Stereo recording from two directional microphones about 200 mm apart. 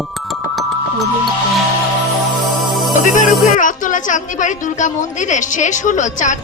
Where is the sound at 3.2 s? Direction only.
40° left (ahead or behind).